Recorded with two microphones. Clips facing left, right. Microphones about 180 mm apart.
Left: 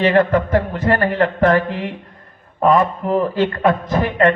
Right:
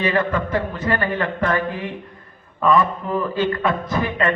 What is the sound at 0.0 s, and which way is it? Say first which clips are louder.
A man's voice: left 6 dB; 60° left (ahead or behind).